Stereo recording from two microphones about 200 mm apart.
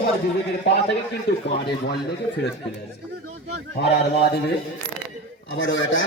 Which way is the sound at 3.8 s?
55° left (ahead or behind).